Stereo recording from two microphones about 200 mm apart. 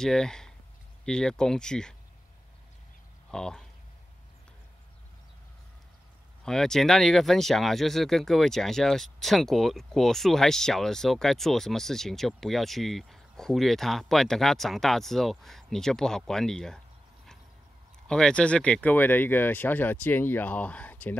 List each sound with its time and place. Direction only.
0.0 s speech: 5° left (ahead or behind)
3.3 s speech: 5° left (ahead or behind)
6.4 s speech: 5° left (ahead or behind)
18.0 s speech: 5° left (ahead or behind)